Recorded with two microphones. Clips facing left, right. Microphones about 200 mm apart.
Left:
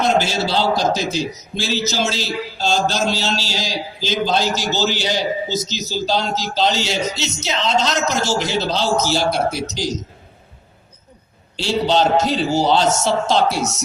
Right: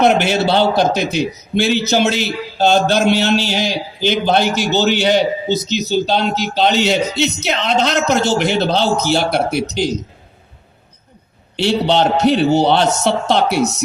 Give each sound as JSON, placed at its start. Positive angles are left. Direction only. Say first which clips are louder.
{"t": 0.0, "sound": "a man's voice", "louder": "right 5 dB", "side_deg": -60}
{"t": 11.5, "sound": "a man's voice", "louder": "right 3 dB", "side_deg": -65}